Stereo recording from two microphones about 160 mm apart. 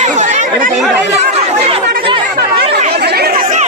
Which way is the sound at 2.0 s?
30° right (ahead or behind).